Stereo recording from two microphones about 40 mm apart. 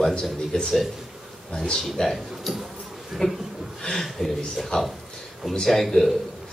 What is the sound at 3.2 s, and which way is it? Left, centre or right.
Speech, centre.